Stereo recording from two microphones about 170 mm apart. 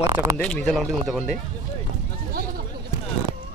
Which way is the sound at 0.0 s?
20° right (ahead or behind).